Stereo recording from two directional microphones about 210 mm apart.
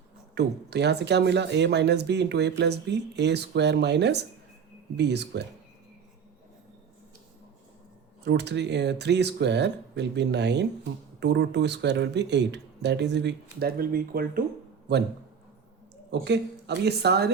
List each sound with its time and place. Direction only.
0.3 s speech: 55° right (ahead or behind)
8.2 s speech: 55° right (ahead or behind)
16.2 s speech: 55° right (ahead or behind)